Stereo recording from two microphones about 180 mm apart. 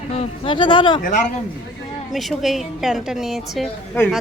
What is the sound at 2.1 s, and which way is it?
A woman's voice, centre (ahead or behind).